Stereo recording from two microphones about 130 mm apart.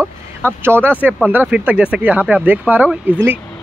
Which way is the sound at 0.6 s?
15° right (ahead or behind).